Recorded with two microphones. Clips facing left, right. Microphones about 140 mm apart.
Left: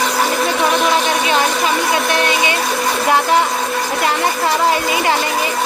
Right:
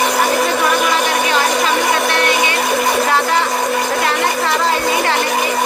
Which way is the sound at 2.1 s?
15° left (ahead or behind).